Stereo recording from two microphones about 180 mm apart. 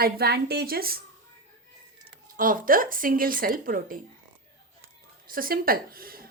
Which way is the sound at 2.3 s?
50° right (ahead or behind).